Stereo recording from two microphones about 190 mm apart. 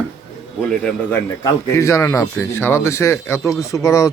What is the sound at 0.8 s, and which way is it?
Speech, 10° left (ahead or behind).